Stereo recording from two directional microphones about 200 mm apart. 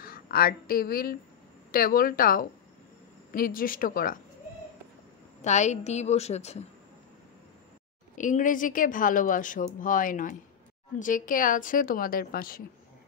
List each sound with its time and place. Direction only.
0.0 s a woman's voice: 45° left (ahead or behind)
5.4 s a woman's voice: 35° left (ahead or behind)
8.2 s a woman's voice: 40° left (ahead or behind)